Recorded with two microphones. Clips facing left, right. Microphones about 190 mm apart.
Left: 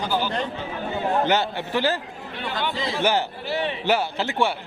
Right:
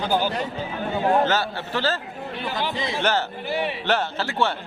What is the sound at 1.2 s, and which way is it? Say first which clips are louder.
Speech: left 1 dB; 15° left (ahead or behind).